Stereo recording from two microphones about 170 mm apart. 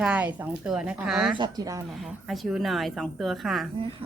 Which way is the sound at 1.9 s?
Centre (ahead or behind).